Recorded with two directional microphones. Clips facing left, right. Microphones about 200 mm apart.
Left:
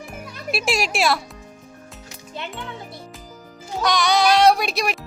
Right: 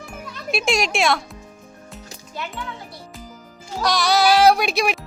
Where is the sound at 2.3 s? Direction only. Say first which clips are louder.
Right 1 dB; 25° left (ahead or behind).